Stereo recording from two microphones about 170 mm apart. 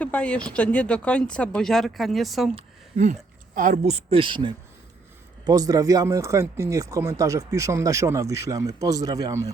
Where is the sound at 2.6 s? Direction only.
45° right (ahead or behind).